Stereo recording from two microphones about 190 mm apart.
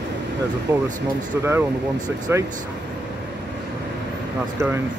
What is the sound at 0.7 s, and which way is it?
Speech, 10° right (ahead or behind).